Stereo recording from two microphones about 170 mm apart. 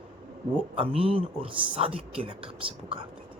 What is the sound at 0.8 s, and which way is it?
Speech, 35° right (ahead or behind).